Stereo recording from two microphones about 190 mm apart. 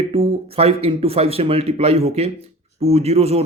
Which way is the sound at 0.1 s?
30° right (ahead or behind).